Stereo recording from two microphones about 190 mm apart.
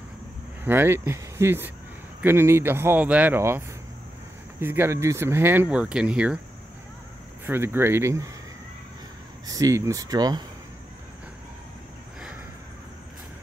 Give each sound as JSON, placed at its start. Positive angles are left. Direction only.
{"t": 0.7, "sound": "speech", "side_deg": -10}
{"t": 7.4, "sound": "speech", "side_deg": -10}
{"t": 9.5, "sound": "speech", "side_deg": -15}